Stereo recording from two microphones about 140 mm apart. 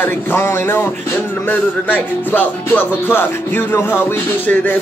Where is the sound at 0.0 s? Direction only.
15° left (ahead or behind).